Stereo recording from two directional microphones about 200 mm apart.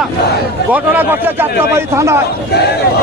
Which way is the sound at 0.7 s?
10° right (ahead or behind).